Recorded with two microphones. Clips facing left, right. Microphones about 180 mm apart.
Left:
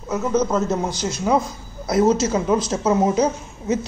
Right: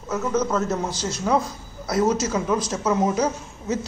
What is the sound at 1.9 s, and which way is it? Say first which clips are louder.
A man's voice: left 4 dB; 25° left (ahead or behind).